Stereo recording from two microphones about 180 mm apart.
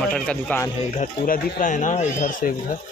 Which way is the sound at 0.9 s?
45° left (ahead or behind).